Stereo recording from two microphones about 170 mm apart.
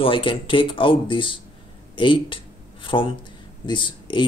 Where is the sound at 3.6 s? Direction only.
30° left (ahead or behind).